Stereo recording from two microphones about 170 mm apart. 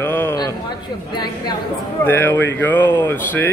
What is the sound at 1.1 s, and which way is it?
Speech, 25° left (ahead or behind).